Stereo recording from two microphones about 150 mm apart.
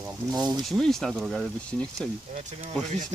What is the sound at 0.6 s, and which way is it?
Speech, centre (ahead or behind).